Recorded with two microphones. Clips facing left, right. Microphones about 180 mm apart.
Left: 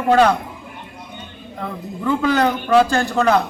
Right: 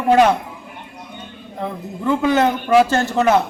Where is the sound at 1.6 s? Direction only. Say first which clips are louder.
Right 1 dB; 20° right (ahead or behind).